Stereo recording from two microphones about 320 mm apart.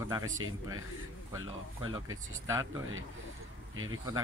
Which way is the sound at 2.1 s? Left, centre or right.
Centre.